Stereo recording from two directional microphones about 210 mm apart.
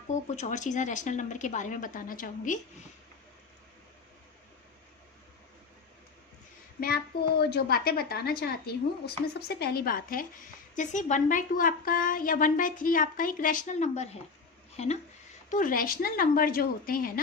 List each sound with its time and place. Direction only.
0.1 s a woman's voice: 35° left (ahead or behind)
6.7 s a woman's voice: 45° left (ahead or behind)